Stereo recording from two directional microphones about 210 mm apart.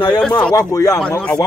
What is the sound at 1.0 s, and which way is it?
Speech, 5° left (ahead or behind).